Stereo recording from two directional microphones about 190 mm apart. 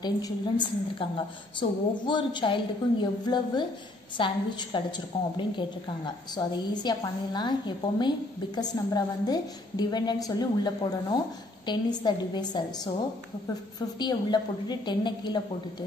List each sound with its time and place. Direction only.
0.0 s a woman's voice: 25° left (ahead or behind)